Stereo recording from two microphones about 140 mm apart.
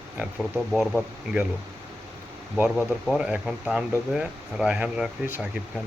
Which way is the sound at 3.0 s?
10° right (ahead or behind).